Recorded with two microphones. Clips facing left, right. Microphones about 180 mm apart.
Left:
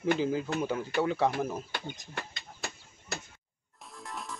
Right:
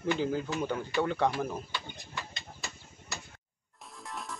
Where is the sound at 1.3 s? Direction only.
55° left (ahead or behind).